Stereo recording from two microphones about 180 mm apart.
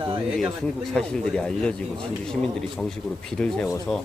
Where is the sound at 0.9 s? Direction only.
5° left (ahead or behind).